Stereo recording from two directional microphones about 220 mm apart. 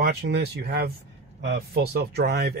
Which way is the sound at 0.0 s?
50° right (ahead or behind).